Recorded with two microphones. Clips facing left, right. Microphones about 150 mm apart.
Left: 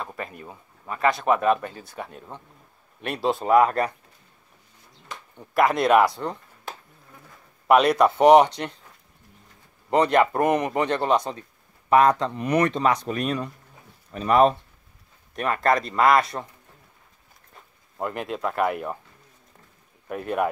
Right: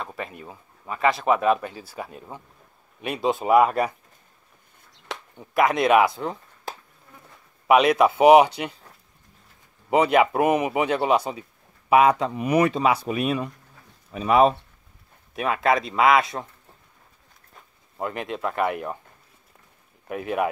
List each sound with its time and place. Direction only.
0.0 s speech: centre (ahead or behind)
5.3 s speech: centre (ahead or behind)
7.6 s speech: 5° right (ahead or behind)
9.8 s speech: 5° right (ahead or behind)
17.6 s speech: centre (ahead or behind)
20.1 s speech: centre (ahead or behind)